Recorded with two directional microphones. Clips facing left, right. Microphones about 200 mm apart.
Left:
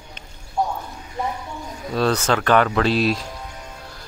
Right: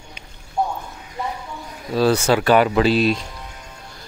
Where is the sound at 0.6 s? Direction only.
20° right (ahead or behind).